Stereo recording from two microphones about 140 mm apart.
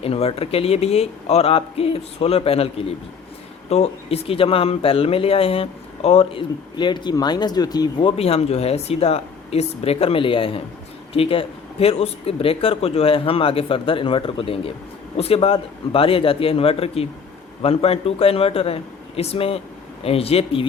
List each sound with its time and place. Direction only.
0.0 s speech: 45° left (ahead or behind)
6.7 s speech: 35° left (ahead or behind)